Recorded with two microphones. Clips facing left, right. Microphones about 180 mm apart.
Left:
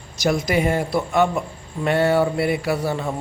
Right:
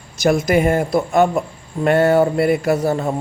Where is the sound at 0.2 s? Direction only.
50° right (ahead or behind).